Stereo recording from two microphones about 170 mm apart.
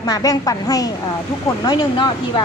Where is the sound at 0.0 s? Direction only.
20° left (ahead or behind).